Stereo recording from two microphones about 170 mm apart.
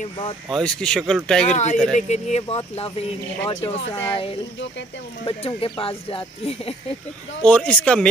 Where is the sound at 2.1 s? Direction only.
40° left (ahead or behind).